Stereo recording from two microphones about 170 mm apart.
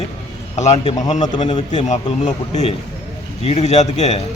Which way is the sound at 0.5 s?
40° left (ahead or behind).